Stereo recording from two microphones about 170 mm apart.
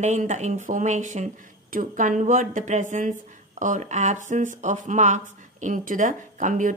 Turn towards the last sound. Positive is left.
turn(degrees=-50)  # may be behind; listen again after turning